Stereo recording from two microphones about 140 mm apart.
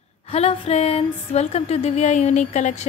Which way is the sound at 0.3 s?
45° left (ahead or behind).